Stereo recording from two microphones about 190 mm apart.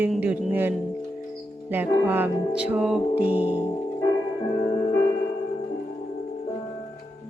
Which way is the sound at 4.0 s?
20° left (ahead or behind).